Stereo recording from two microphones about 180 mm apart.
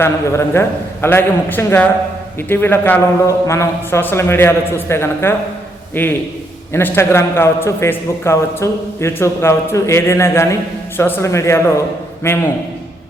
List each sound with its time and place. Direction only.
0.0 s a man's voice: 15° left (ahead or behind)